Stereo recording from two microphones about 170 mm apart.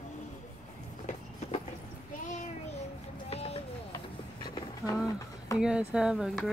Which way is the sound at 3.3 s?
35° left (ahead or behind).